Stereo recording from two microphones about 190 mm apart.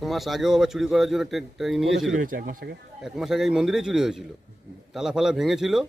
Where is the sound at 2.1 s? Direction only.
45° right (ahead or behind).